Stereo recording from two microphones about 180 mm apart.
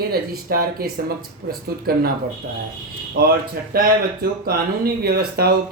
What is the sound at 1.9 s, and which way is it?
Speech, 60° right (ahead or behind).